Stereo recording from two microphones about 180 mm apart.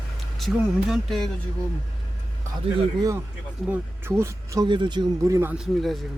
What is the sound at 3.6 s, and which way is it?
Speech, 15° right (ahead or behind).